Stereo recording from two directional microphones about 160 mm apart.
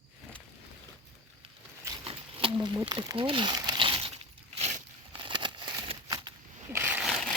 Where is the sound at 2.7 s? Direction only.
30° right (ahead or behind).